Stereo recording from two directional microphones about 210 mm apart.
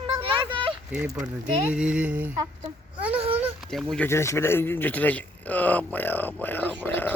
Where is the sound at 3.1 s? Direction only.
30° right (ahead or behind).